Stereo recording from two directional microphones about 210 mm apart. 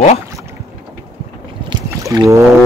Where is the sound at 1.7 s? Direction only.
15° right (ahead or behind).